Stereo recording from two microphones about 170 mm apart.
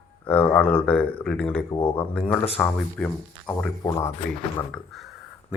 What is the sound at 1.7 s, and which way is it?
Speech, 30° left (ahead or behind).